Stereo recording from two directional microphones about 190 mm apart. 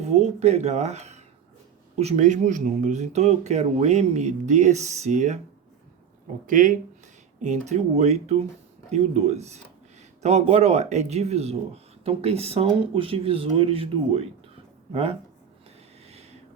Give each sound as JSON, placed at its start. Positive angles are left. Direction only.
{"t": 0.0, "sound": "speech", "side_deg": -35}
{"t": 6.4, "sound": "speech", "side_deg": -45}